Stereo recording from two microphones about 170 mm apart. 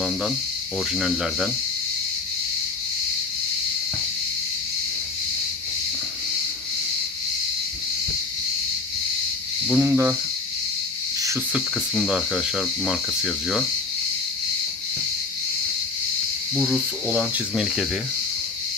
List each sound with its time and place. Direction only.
0.9 s speech: 5° right (ahead or behind)
9.7 s speech: 10° right (ahead or behind)
11.9 s speech: centre (ahead or behind)
16.5 s speech: 5° right (ahead or behind)